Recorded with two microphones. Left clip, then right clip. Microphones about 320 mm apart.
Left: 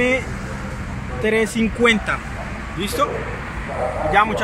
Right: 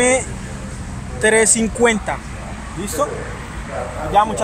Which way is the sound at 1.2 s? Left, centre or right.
Right.